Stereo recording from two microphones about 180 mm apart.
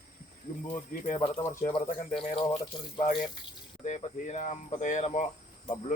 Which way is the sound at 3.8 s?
40° left (ahead or behind).